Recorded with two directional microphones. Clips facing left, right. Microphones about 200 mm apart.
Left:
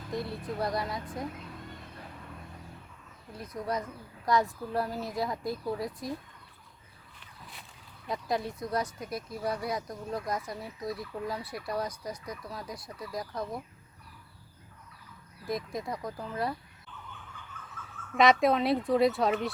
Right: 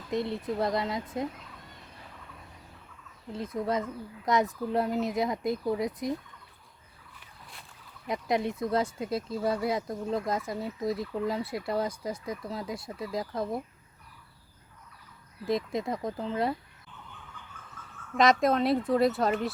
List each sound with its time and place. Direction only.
0.1 s speech: 20° right (ahead or behind)
3.3 s speech: 25° right (ahead or behind)
8.0 s speech: 20° right (ahead or behind)
15.4 s speech: 25° right (ahead or behind)
18.2 s speech: centre (ahead or behind)